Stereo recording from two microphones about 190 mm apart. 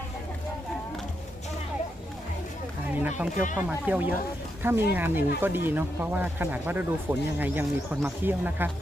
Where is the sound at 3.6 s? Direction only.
10° right (ahead or behind).